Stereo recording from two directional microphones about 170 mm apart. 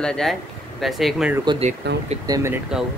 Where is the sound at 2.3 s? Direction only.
15° right (ahead or behind).